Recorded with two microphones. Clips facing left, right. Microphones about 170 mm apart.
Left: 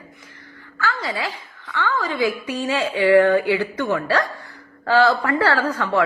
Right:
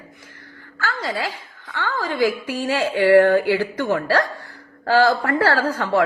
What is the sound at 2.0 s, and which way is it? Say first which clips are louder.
A woman's voice: right 2 dB; 50° right (ahead or behind).